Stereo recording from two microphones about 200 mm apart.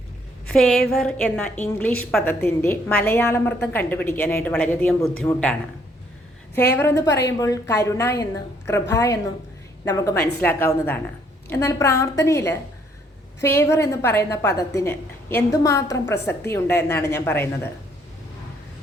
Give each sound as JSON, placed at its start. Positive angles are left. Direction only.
{"t": 0.4, "sound": "a woman's voice", "side_deg": 5}
{"t": 6.6, "sound": "a woman's voice", "side_deg": 10}